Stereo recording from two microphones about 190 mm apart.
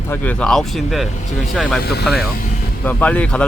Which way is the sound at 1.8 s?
55° left (ahead or behind).